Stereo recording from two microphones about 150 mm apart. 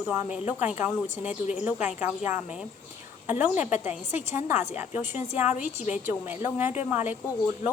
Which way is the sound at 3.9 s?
50° left (ahead or behind).